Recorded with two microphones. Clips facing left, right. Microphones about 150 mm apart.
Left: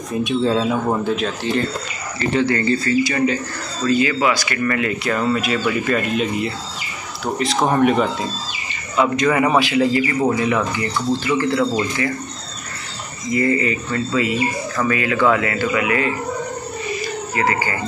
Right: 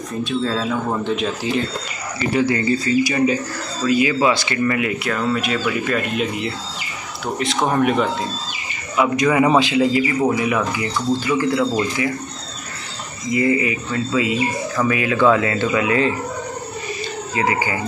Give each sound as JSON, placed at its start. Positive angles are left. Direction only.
{"t": 0.2, "sound": "speech", "side_deg": 20}
{"t": 1.1, "sound": "speech", "side_deg": -5}
{"t": 4.7, "sound": "speech", "side_deg": -10}
{"t": 5.1, "sound": "speech", "side_deg": 0}
{"t": 8.9, "sound": "speech", "side_deg": -15}
{"t": 13.3, "sound": "speech", "side_deg": -15}
{"t": 17.4, "sound": "speech", "side_deg": -15}